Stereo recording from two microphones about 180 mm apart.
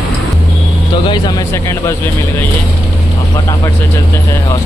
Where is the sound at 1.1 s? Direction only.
20° left (ahead or behind).